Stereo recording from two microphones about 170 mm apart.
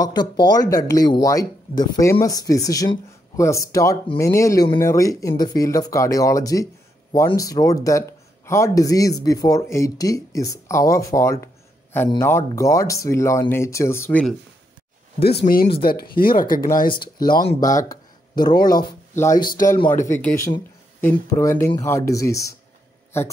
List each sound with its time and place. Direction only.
0.0 s speech: 25° left (ahead or behind)
15.1 s speech: 70° left (ahead or behind); by 17.8 s 50° left (ahead or behind)
17.8 s speech: 25° left (ahead or behind)